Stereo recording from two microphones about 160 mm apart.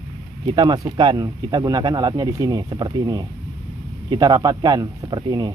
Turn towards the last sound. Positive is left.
turn(degrees=-25)  # may be behind; listen again after turning